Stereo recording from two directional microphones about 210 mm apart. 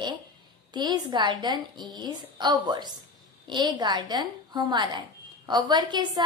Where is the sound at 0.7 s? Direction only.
20° right (ahead or behind).